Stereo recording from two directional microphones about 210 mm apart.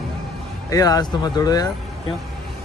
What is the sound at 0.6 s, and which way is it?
Speech, 15° left (ahead or behind).